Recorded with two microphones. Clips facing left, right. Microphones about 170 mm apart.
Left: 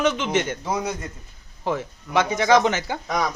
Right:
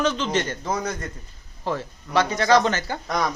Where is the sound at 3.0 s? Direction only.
Centre (ahead or behind).